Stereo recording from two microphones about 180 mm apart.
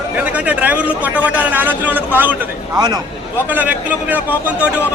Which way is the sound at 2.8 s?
25° right (ahead or behind).